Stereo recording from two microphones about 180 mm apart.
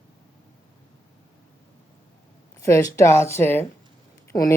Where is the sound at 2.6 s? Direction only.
15° left (ahead or behind).